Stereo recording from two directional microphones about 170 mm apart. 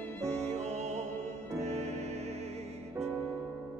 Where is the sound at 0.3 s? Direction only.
40° right (ahead or behind).